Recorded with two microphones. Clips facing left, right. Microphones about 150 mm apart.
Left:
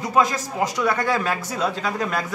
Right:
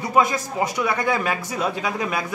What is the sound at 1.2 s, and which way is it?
A man's voice, 15° right (ahead or behind).